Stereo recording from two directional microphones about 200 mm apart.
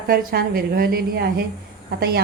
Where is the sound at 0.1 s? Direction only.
50° right (ahead or behind).